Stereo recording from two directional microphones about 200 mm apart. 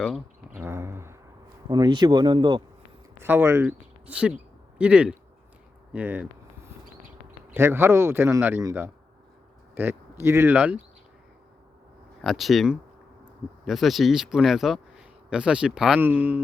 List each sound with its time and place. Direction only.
0.0 s a sound: 5° right (ahead or behind)
1.6 s speech: 20° right (ahead or behind)
3.2 s a man's voice: 10° right (ahead or behind)
5.9 s a sound: 10° right (ahead or behind)
7.5 s a man's voice: 10° right (ahead or behind)
12.2 s a man's voice: centre (ahead or behind)